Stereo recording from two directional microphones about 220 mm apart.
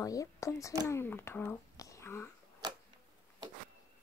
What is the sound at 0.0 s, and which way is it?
A child's voice, 15° left (ahead or behind).